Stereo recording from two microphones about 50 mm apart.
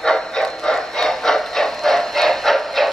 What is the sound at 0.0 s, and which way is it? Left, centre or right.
Train, centre.